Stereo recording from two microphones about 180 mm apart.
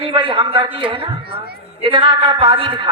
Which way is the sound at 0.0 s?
30° right (ahead or behind).